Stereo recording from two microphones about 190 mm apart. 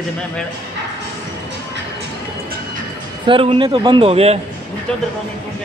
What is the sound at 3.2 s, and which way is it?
A man's voice, 30° right (ahead or behind).